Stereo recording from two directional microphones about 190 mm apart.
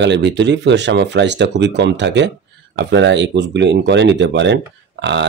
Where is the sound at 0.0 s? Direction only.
65° right (ahead or behind).